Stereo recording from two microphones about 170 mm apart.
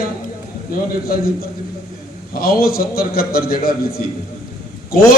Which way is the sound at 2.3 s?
60° left (ahead or behind).